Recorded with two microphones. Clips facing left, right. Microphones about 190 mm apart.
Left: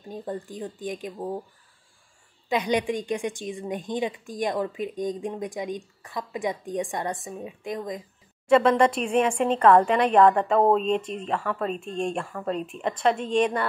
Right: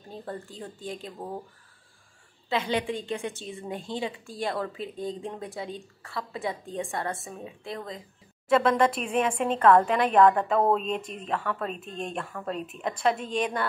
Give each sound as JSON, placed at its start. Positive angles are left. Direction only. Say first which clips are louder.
{"t": 0.1, "sound": "a woman's voice", "louder": "left 5 dB", "side_deg": 15}
{"t": 2.5, "sound": "a woman's voice", "louder": "left 3 dB", "side_deg": 15}
{"t": 8.7, "sound": "a woman's voice", "louder": "left 3 dB", "side_deg": -5}